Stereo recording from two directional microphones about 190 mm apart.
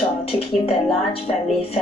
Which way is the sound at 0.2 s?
35° left (ahead or behind).